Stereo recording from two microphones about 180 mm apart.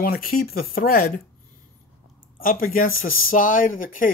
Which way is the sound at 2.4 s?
50° left (ahead or behind).